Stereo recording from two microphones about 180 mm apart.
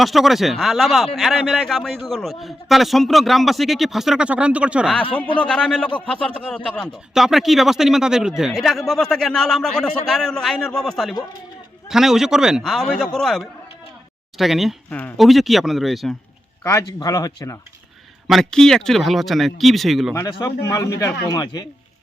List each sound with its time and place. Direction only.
0.0 s speech: centre (ahead or behind)
16.6 s speech: 15° left (ahead or behind)
18.3 s speech: centre (ahead or behind)
20.1 s speech: 15° left (ahead or behind)